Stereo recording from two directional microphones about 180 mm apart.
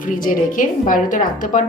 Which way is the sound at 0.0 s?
50° left (ahead or behind).